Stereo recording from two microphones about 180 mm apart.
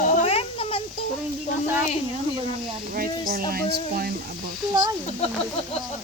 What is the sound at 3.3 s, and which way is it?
Speech, 55° right (ahead or behind).